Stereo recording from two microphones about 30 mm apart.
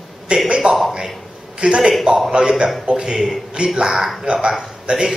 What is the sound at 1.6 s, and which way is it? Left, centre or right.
A man's voice, right.